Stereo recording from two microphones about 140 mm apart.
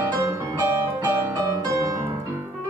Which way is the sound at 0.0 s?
20° right (ahead or behind).